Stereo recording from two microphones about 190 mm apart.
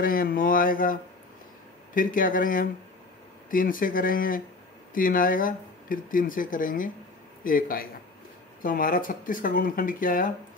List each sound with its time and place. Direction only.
0.0 s speech: 50° left (ahead or behind)
2.0 s speech: 45° left (ahead or behind)